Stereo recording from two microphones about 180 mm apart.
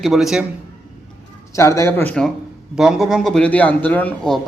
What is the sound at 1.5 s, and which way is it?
Speech, 15° left (ahead or behind).